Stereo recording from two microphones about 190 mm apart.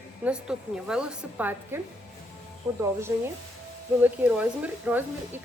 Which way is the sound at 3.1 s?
15° right (ahead or behind).